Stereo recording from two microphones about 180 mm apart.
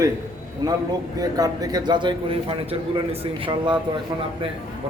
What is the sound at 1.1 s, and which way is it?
A man's voice, 20° right (ahead or behind).